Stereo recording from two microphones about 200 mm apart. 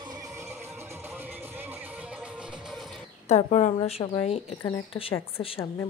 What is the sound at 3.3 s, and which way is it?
A woman's voice, 35° left (ahead or behind).